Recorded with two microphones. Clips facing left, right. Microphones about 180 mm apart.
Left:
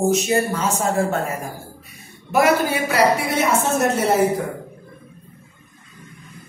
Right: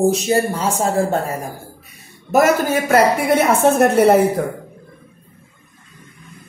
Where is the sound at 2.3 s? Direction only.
45° right (ahead or behind).